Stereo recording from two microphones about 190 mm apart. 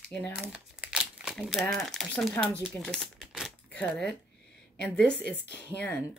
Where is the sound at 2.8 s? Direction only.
Centre (ahead or behind).